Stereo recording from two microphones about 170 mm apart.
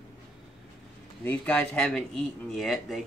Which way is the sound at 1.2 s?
5° left (ahead or behind).